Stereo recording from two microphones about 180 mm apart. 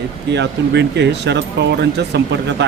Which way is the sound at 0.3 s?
75° right (ahead or behind).